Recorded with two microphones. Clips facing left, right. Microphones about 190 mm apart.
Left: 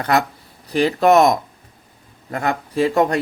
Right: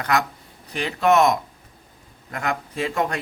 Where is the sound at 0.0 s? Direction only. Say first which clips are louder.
Left 4 dB; 35° left (ahead or behind).